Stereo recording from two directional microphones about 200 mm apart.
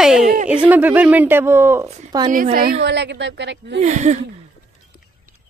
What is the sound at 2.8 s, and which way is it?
Speech, 60° right (ahead or behind).